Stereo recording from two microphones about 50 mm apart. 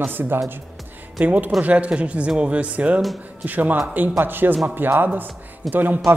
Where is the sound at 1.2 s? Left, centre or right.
Right.